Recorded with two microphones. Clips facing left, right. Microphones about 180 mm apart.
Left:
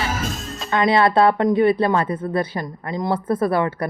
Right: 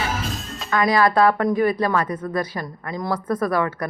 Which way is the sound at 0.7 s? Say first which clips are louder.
Left 2 dB; 25° left (ahead or behind).